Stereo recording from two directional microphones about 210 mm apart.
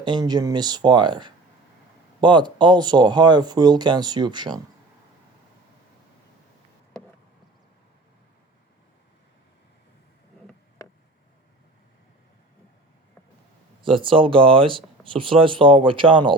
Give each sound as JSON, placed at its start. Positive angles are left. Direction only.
{"t": 0.0, "sound": "speech", "side_deg": -20}
{"t": 13.8, "sound": "speech", "side_deg": -25}